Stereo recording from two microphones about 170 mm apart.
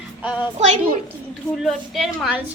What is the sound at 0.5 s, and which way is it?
Speech, 40° right (ahead or behind).